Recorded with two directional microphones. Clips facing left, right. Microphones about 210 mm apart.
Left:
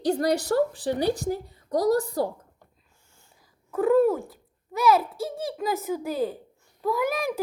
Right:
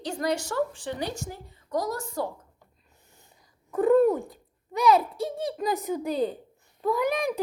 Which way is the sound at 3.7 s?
Centre (ahead or behind).